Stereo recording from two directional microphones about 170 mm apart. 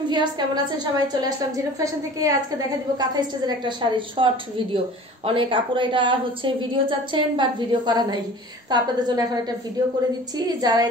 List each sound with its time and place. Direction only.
0.1 s a woman's voice: 25° right (ahead or behind)
10.3 s a woman's voice: 25° right (ahead or behind)